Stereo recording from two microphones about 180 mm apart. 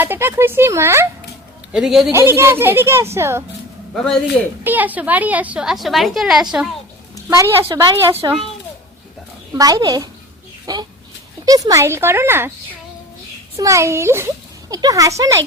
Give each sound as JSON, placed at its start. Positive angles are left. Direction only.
{"t": 0.0, "sound": "a child's voice", "side_deg": -10}
{"t": 1.7, "sound": "a woman's voice", "side_deg": 0}
{"t": 2.1, "sound": "a child's voice", "side_deg": -15}
{"t": 4.6, "sound": "a woman's voice", "side_deg": -10}
{"t": 9.6, "sound": "a child's voice", "side_deg": -20}
{"t": 13.6, "sound": "a child's voice", "side_deg": -15}